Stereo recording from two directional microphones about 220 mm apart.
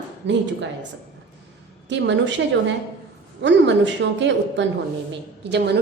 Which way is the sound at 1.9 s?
55° right (ahead or behind).